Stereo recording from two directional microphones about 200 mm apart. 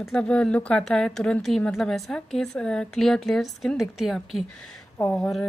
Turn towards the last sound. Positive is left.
turn(degrees=5)  # may be behind; listen again after turning